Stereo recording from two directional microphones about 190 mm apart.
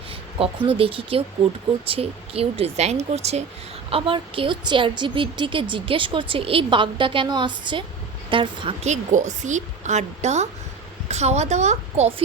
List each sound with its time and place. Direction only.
0.3 s a woman's voice: 30° right (ahead or behind)